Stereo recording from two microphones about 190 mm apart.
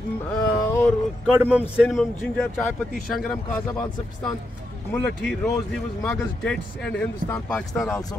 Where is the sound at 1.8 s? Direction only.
5° left (ahead or behind).